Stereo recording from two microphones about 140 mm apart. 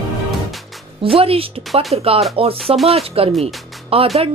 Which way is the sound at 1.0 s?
45° right (ahead or behind).